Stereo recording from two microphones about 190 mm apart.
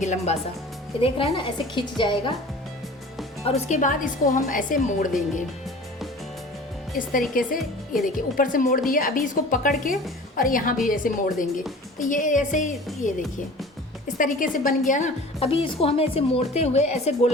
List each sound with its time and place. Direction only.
0.0 s a woman's voice: 40° left (ahead or behind)
1.0 s a woman's voice: 25° left (ahead or behind)
3.4 s a woman's voice: 40° left (ahead or behind)
7.1 s a woman's voice: 45° left (ahead or behind)
14.2 s a woman's voice: 45° left (ahead or behind)